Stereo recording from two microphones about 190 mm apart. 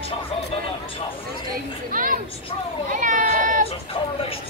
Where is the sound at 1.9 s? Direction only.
45° right (ahead or behind).